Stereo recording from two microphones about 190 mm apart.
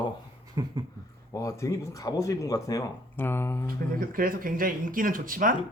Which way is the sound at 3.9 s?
50° right (ahead or behind).